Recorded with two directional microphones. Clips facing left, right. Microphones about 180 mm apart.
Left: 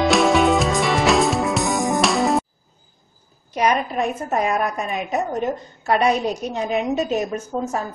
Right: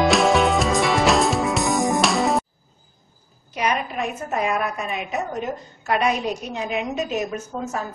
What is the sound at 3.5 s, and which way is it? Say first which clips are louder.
A woman's voice: left 4 dB; 40° left (ahead or behind).